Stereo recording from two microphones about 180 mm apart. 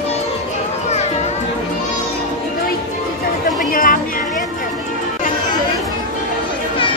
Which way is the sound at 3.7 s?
50° left (ahead or behind).